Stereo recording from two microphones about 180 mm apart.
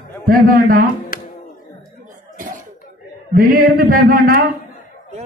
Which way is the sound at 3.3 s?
50° right (ahead or behind).